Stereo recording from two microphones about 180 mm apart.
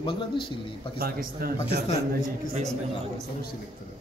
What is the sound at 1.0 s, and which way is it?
Speech, 55° right (ahead or behind).